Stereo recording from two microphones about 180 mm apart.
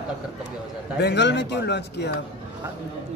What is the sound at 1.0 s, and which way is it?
Speech, 75° left (ahead or behind).